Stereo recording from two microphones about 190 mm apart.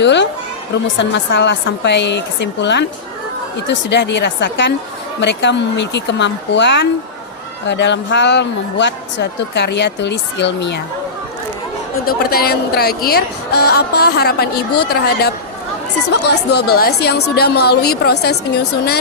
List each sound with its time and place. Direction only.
0.0 s a man's voice: 65° left (ahead or behind)
12.0 s a woman's voice: 55° left (ahead or behind)